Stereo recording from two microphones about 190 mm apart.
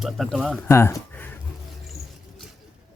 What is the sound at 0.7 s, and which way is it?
Speech, 15° left (ahead or behind).